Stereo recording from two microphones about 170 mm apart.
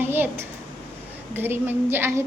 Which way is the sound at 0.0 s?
15° right (ahead or behind).